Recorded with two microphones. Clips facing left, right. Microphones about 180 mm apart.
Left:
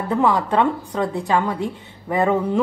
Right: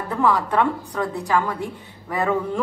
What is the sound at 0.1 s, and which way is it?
A woman's voice, 25° left (ahead or behind).